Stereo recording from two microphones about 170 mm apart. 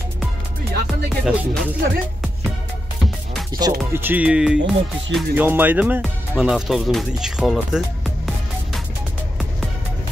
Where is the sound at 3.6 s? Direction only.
25° right (ahead or behind).